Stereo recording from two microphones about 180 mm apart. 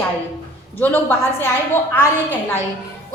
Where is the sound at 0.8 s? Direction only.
10° left (ahead or behind).